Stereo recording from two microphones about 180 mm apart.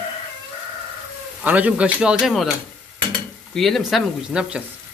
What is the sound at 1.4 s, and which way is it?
A man's voice, 10° right (ahead or behind).